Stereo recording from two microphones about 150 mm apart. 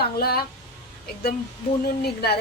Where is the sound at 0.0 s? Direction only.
90° left.